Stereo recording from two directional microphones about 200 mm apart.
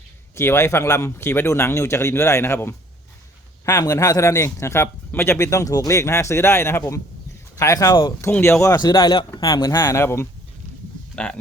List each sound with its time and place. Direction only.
0.3 s speech: 10° left (ahead or behind)